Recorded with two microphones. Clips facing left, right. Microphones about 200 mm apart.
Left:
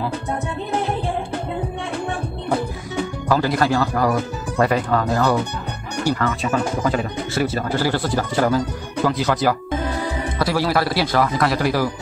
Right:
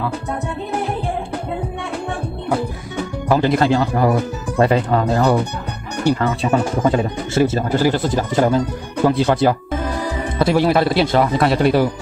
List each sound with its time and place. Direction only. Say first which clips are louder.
3.3 s speech: right 4 dB; 20° right (ahead or behind)